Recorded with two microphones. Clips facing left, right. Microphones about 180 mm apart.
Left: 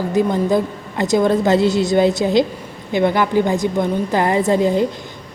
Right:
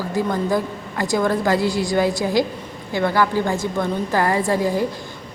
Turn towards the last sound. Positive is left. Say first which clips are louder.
# left 4 dB
turn(degrees=20)  # may be behind; listen again after turning